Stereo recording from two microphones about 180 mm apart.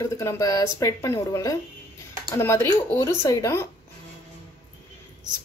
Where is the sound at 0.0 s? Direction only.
15° left (ahead or behind).